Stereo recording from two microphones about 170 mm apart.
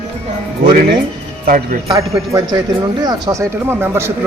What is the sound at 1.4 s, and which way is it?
Speech, 55° right (ahead or behind).